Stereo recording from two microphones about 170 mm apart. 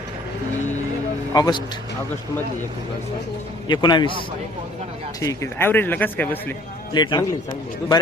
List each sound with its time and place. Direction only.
1.3 s a man's voice: 25° left (ahead or behind)
3.7 s a man's voice: 25° left (ahead or behind)
5.2 s speech: 20° left (ahead or behind)
6.9 s a man's voice: 25° left (ahead or behind)